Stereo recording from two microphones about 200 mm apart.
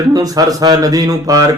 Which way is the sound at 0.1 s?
20° right (ahead or behind).